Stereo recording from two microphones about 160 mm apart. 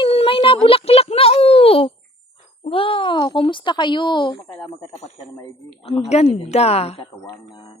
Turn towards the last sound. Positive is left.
turn(degrees=25)  # may be behind; listen again after turning